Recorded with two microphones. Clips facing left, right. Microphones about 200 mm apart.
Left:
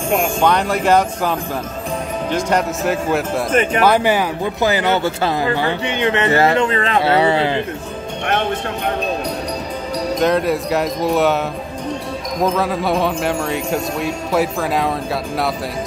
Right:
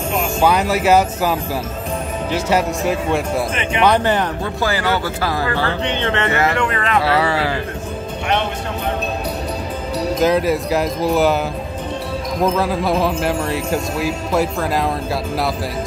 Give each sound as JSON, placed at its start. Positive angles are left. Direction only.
{"t": 0.4, "sound": "speech", "side_deg": -5}
{"t": 4.6, "sound": "speech", "side_deg": 20}
{"t": 6.3, "sound": "speech", "side_deg": 25}
{"t": 10.1, "sound": "speech", "side_deg": 0}
{"t": 12.4, "sound": "speech", "side_deg": 0}